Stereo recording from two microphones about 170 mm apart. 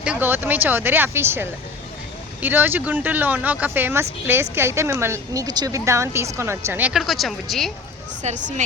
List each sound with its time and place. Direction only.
0.0 s a woman's voice: 10° right (ahead or behind)
8.2 s speech: 45° right (ahead or behind)